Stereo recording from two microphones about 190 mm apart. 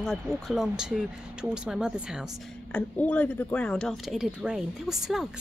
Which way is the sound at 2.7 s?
5° left (ahead or behind).